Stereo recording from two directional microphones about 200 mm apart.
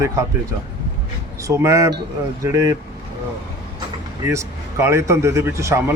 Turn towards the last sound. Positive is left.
turn(degrees=-15)  # may be behind; listen again after turning